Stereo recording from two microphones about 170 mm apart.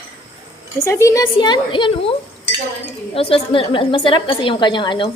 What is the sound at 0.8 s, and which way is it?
A woman's voice, 15° left (ahead or behind).